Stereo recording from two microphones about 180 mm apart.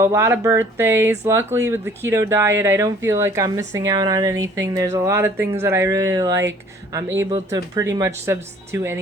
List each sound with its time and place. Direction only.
0.0 s speech: 15° right (ahead or behind)